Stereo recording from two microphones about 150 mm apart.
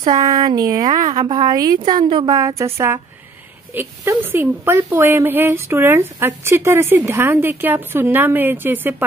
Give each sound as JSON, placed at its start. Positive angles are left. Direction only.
{"t": 0.0, "sound": "a woman's voice", "side_deg": -30}